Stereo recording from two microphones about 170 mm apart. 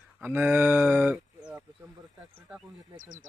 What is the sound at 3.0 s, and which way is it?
Speech, 50° right (ahead or behind).